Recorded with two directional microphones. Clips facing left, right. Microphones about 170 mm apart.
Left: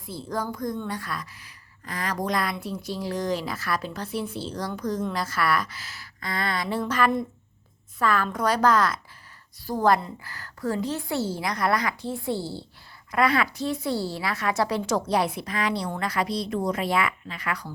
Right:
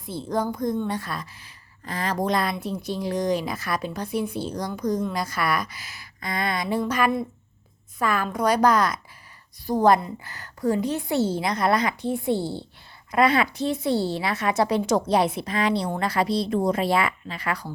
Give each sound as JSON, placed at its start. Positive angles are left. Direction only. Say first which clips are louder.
{"t": 0.0, "sound": "a woman's voice", "louder": "right 4 dB", "side_deg": -20}